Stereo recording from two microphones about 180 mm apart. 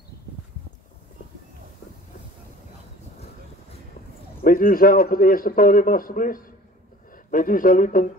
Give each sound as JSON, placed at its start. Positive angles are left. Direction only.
{"t": 4.4, "sound": "a man's voice", "side_deg": 55}